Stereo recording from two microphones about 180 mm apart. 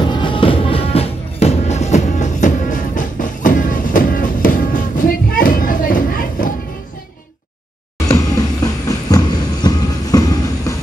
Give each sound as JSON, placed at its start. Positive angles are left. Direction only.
{"t": 0.1, "sound": "music", "side_deg": 25}
{"t": 8.8, "sound": "train", "side_deg": 20}